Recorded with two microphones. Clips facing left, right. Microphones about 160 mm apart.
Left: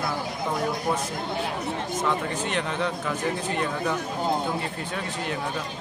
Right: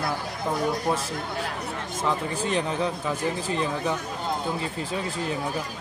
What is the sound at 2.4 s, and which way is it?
Speech, 35° right (ahead or behind).